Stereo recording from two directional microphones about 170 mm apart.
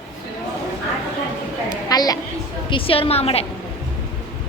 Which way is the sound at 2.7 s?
30° left (ahead or behind).